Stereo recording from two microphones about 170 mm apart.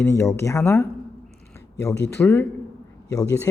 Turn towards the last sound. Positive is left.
turn(degrees=20)  # may be behind; listen again after turning